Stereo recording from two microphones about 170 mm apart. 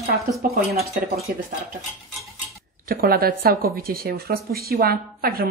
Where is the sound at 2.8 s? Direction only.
60° right (ahead or behind).